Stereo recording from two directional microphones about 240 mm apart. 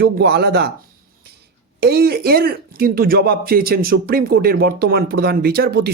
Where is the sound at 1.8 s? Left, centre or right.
Right.